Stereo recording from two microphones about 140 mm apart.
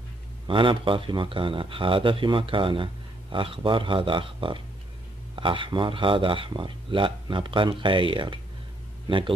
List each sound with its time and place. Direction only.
0.5 s a man's voice: 35° right (ahead or behind)